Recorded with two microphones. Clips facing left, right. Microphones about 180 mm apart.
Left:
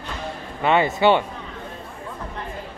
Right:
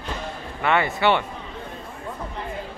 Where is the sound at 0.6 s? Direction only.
20° left (ahead or behind).